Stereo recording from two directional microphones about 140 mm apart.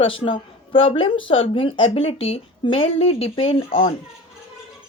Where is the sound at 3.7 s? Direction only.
75° left (ahead or behind).